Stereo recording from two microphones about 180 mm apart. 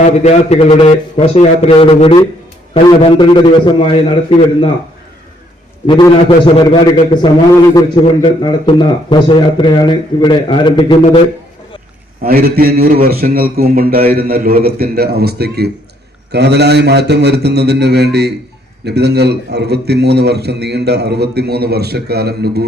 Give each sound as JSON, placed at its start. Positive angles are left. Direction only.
{"t": 0.0, "sound": "a man's voice", "side_deg": 40}
{"t": 5.8, "sound": "a man's voice", "side_deg": 25}
{"t": 7.7, "sound": "a man's voice", "side_deg": 25}
{"t": 12.2, "sound": "a man's voice", "side_deg": -55}